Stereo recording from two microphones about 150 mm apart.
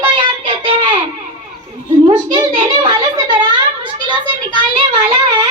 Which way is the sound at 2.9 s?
30° right (ahead or behind).